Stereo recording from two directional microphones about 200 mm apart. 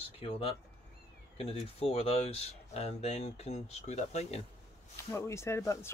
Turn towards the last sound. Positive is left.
turn(degrees=15)  # may be behind; listen again after turning